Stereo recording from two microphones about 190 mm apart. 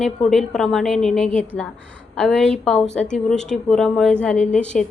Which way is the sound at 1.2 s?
40° left (ahead or behind).